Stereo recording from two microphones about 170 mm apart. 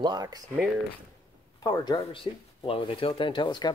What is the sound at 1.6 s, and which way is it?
Speech, 25° left (ahead or behind).